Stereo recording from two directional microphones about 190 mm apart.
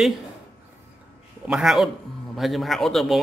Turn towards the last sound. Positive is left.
turn(degrees=0)  # may be behind; listen again after turning